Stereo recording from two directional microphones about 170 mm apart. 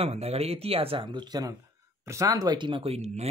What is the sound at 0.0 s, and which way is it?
Speech, 35° right (ahead or behind).